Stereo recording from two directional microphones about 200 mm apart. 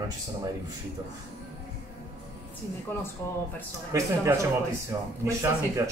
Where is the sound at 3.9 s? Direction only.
15° right (ahead or behind).